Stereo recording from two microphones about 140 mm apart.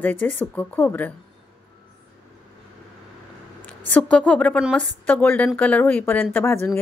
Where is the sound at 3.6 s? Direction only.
10° left (ahead or behind).